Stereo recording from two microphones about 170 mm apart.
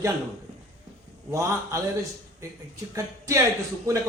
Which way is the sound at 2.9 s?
20° right (ahead or behind).